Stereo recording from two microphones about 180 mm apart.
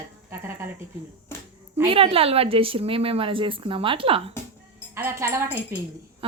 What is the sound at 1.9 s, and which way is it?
A woman's voice, 30° right (ahead or behind).